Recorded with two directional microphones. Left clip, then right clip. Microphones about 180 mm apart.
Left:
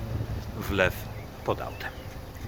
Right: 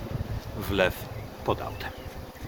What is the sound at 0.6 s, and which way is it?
Speech, 10° right (ahead or behind).